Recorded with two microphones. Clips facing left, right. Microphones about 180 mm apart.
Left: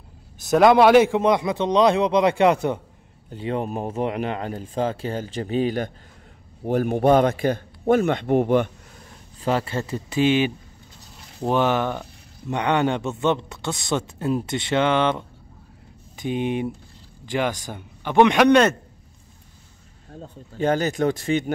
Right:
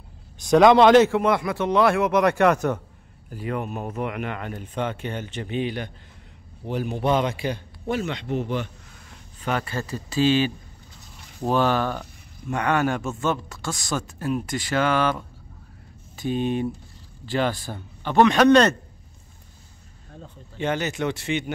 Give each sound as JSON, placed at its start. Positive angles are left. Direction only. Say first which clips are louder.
{"t": 0.4, "sound": "a man's voice", "louder": "even", "side_deg": 5}
{"t": 3.3, "sound": "a man's voice", "louder": "left 3 dB", "side_deg": 25}
{"t": 9.4, "sound": "a man's voice", "louder": "left 4 dB", "side_deg": 30}
{"t": 20.5, "sound": "speech", "louder": "left 4 dB", "side_deg": 40}